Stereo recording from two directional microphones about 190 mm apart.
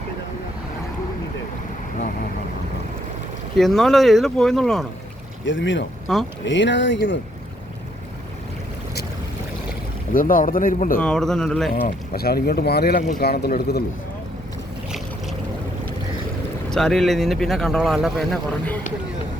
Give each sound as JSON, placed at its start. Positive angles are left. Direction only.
{"t": 3.6, "sound": "speech", "side_deg": 0}
{"t": 5.5, "sound": "speech", "side_deg": 75}
{"t": 6.1, "sound": "speech", "side_deg": 0}
{"t": 6.4, "sound": "speech", "side_deg": 70}
{"t": 10.1, "sound": "speech", "side_deg": 45}
{"t": 11.0, "sound": "speech", "side_deg": 5}
{"t": 11.7, "sound": "speech", "side_deg": 55}
{"t": 16.6, "sound": "speech", "side_deg": 5}